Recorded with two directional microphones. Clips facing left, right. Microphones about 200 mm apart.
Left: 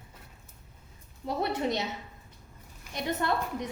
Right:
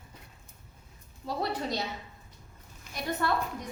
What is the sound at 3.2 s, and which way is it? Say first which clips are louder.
Speech: right 1 dB; 20° left (ahead or behind).